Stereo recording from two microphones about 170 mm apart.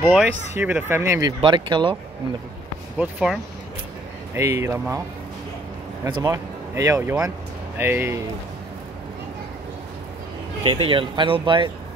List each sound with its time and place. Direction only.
0.0 s speech: 5° right (ahead or behind)
1.4 s speech: 30° right (ahead or behind)
3.0 s speech: 5° right (ahead or behind)
4.3 s speech: 15° right (ahead or behind)
6.0 s speech: 20° right (ahead or behind)
10.6 s speech: 30° right (ahead or behind)